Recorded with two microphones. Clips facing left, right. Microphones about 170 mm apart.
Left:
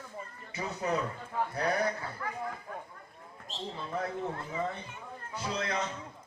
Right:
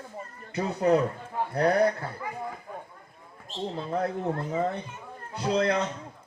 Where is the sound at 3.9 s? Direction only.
45° right (ahead or behind).